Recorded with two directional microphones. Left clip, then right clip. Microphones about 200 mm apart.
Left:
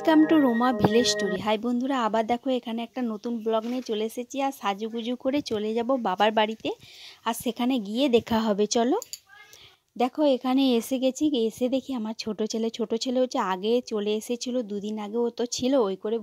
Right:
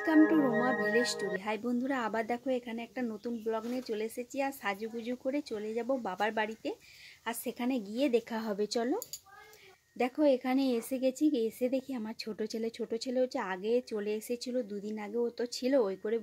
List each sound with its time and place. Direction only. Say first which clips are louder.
0.0 s a woman's voice: left 6 dB; 40° left (ahead or behind)